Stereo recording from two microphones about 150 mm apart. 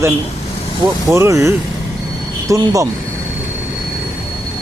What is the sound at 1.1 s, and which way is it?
Speech, 20° right (ahead or behind).